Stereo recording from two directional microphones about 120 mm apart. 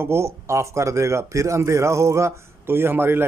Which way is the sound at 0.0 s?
20° right (ahead or behind).